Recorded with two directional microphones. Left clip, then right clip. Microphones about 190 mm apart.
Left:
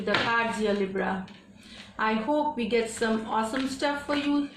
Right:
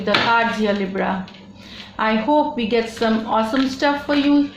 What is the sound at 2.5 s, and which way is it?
Speech, 30° right (ahead or behind).